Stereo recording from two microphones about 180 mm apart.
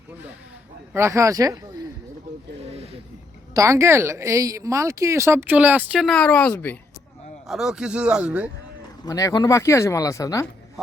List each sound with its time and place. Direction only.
0.9 s speech: 15° right (ahead or behind)
3.5 s speech: 15° right (ahead or behind); by 6.7 s 10° left (ahead or behind)
7.4 s speech: centre (ahead or behind)
9.0 s speech: 20° left (ahead or behind)